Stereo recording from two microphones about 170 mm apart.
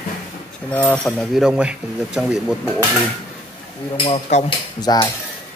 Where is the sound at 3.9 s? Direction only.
35° left (ahead or behind).